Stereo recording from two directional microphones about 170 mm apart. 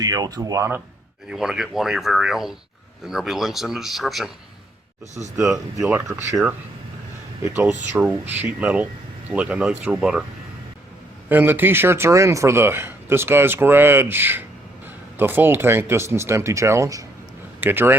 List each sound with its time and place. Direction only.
0.0 s speech: 20° right (ahead or behind)
1.3 s speech: 5° right (ahead or behind)
6.1 s speech: centre (ahead or behind)
7.4 s speech: 10° right (ahead or behind)
11.3 s speech: 10° right (ahead or behind)